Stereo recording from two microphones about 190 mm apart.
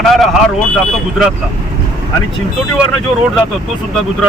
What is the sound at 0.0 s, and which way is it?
Speech, centre (ahead or behind).